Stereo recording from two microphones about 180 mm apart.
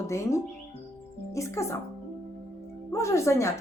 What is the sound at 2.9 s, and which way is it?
Speech, 15° left (ahead or behind).